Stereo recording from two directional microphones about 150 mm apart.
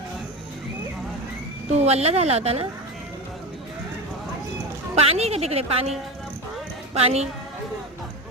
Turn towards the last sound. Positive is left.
turn(degrees=-45)  # may be behind; listen again after turning